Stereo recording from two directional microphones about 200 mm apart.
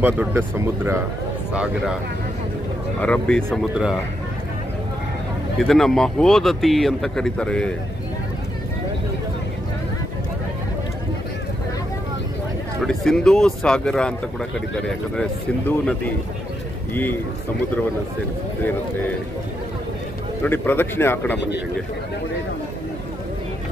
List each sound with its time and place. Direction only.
0.0 s speech: 10° right (ahead or behind)
3.0 s speech: 5° left (ahead or behind)
5.6 s speech: centre (ahead or behind)
12.8 s speech: 5° left (ahead or behind)
20.4 s speech: 10° left (ahead or behind)